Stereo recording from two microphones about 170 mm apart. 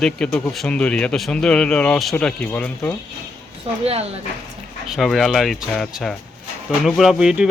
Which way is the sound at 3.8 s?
35° right (ahead or behind).